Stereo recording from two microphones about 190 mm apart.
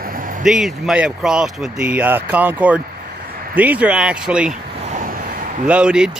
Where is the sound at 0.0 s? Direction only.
45° right (ahead or behind).